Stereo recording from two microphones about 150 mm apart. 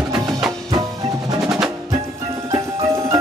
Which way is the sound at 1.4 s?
5° right (ahead or behind).